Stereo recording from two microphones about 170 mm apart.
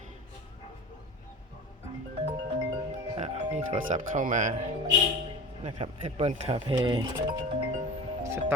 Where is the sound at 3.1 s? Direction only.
40° right (ahead or behind).